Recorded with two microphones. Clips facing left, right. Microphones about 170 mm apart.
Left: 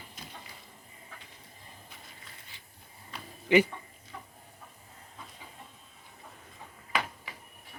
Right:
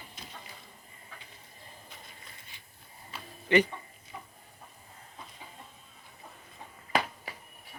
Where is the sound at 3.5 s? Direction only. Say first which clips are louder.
Left 2 dB; 10° left (ahead or behind).